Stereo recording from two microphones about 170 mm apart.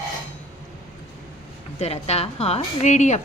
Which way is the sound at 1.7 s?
35° left (ahead or behind).